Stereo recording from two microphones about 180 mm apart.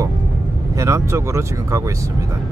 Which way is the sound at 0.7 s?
15° right (ahead or behind).